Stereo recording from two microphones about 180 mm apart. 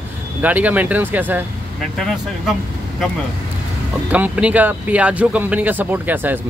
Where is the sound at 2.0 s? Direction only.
Centre (ahead or behind).